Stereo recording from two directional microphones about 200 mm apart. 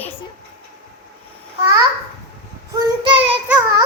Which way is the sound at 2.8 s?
25° right (ahead or behind).